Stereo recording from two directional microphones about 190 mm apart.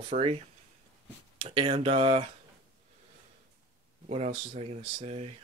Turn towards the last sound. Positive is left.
turn(degrees=-35)  # may be behind; listen again after turning